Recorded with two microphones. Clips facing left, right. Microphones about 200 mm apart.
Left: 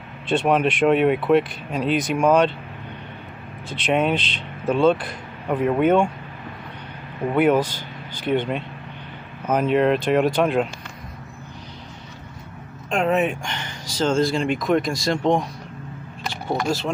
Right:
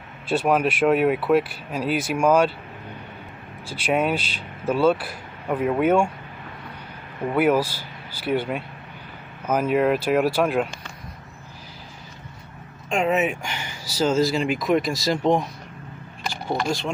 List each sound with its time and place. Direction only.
0.3 s speech: 5° right (ahead or behind)
3.6 s speech: 10° right (ahead or behind)
7.3 s speech: 5° right (ahead or behind)
12.9 s speech: centre (ahead or behind)